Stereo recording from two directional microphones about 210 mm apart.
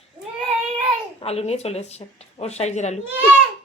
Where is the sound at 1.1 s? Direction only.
30° left (ahead or behind).